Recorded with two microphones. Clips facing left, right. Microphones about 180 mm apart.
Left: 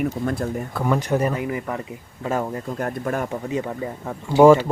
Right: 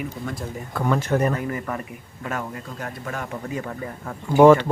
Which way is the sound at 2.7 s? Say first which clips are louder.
Left 7 dB; 50° left (ahead or behind).